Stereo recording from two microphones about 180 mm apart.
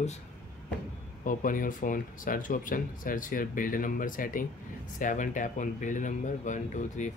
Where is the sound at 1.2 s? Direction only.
50° left (ahead or behind).